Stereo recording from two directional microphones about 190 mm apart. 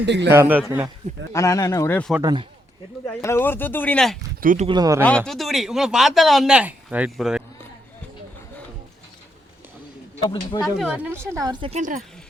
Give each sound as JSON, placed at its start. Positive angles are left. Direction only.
{"t": 0.0, "sound": "a man's voice", "side_deg": -65}
{"t": 0.3, "sound": "speech", "side_deg": -10}
{"t": 1.3, "sound": "speech", "side_deg": 15}
{"t": 2.2, "sound": "speech", "side_deg": -25}
{"t": 3.1, "sound": "speech", "side_deg": 15}
{"t": 4.4, "sound": "speech", "side_deg": -45}
{"t": 4.6, "sound": "speech", "side_deg": -20}
{"t": 5.0, "sound": "speech", "side_deg": 5}
{"t": 10.2, "sound": "speech", "side_deg": 25}
{"t": 10.6, "sound": "speech", "side_deg": 0}
{"t": 11.3, "sound": "speech", "side_deg": -20}
{"t": 11.7, "sound": "speech", "side_deg": -45}